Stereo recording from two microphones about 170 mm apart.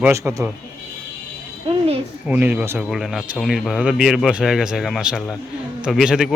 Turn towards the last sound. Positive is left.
turn(degrees=-5)  # may be behind; listen again after turning